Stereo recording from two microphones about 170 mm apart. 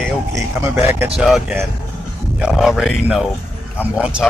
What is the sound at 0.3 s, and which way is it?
Speech, 15° right (ahead or behind).